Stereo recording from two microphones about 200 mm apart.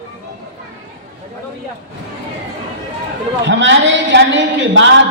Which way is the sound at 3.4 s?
65° right (ahead or behind).